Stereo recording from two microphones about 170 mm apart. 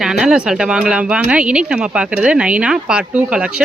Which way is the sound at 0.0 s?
5° right (ahead or behind).